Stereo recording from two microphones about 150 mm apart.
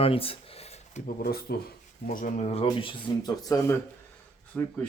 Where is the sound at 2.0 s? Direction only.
60° left (ahead or behind); by 2.6 s 45° left (ahead or behind).